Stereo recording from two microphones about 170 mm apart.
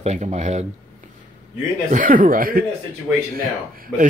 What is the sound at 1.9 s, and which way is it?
Speech, 55° right (ahead or behind).